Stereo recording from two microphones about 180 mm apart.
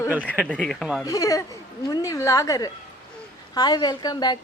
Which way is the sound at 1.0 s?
20° left (ahead or behind).